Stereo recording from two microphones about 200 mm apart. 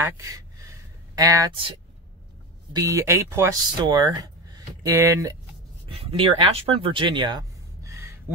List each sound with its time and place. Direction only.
0.2 s speech: 15° right (ahead or behind)
2.7 s speech: 15° right (ahead or behind)
5.9 s speech: 25° right (ahead or behind)